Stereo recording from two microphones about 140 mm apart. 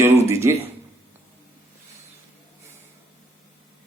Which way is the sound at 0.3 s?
20° right (ahead or behind).